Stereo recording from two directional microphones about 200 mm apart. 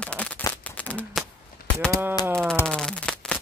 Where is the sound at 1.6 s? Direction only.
45° left (ahead or behind).